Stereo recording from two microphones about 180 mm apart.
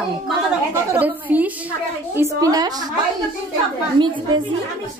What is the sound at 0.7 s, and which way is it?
A woman's voice, 10° right (ahead or behind).